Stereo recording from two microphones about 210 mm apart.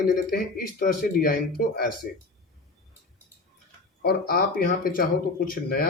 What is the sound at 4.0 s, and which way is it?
Speech, 45° left (ahead or behind).